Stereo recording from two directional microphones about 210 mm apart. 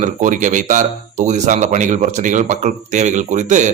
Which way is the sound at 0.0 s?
35° right (ahead or behind).